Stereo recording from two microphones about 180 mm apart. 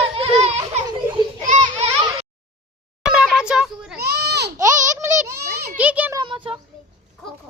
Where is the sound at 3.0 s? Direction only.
5° right (ahead or behind).